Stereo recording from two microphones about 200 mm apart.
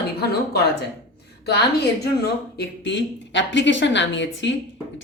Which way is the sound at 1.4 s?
55° left (ahead or behind).